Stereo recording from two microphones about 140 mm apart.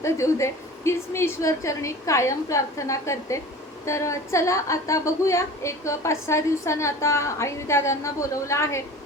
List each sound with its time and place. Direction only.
0.0 s a woman's voice: 20° left (ahead or behind)